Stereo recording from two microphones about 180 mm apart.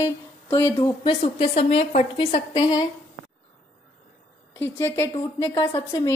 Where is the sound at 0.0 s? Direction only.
20° left (ahead or behind).